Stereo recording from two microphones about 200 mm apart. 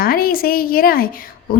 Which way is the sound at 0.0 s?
45° left (ahead or behind).